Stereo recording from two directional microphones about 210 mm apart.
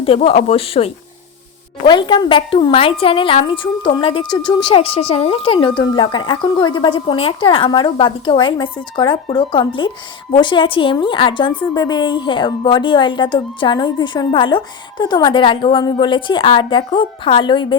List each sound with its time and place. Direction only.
0.0 s a woman's voice: 25° left (ahead or behind)